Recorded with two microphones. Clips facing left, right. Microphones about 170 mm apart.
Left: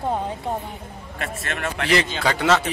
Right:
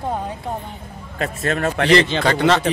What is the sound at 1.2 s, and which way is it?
Speech, 35° right (ahead or behind).